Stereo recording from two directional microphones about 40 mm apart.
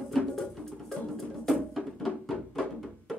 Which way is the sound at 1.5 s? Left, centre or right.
Centre.